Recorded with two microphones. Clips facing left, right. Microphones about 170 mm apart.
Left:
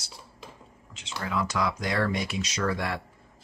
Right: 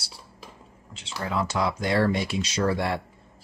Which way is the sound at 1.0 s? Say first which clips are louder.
Even; 30° right (ahead or behind).